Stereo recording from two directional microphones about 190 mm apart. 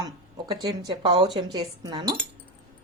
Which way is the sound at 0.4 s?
20° right (ahead or behind).